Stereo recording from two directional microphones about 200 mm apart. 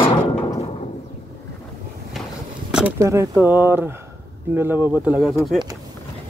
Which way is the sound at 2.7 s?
5° right (ahead or behind).